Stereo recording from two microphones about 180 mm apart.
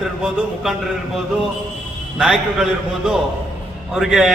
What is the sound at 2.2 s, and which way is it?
A man's voice, 5° right (ahead or behind).